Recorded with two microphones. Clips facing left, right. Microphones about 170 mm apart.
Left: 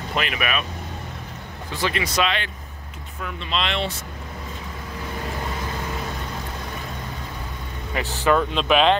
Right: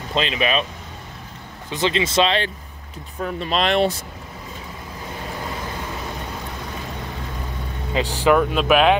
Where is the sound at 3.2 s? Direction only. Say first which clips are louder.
Right 5 dB; 40° right (ahead or behind).